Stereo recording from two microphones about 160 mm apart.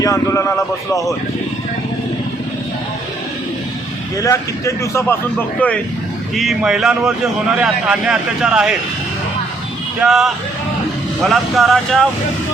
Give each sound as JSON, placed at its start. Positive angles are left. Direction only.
{"t": 0.0, "sound": "speech", "side_deg": 20}
{"t": 4.2, "sound": "speech", "side_deg": 20}
{"t": 10.0, "sound": "speech", "side_deg": 0}